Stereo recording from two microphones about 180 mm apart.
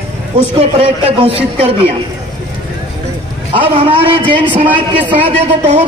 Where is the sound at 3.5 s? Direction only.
30° right (ahead or behind).